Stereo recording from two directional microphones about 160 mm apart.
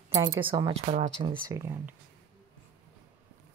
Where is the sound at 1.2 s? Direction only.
30° right (ahead or behind).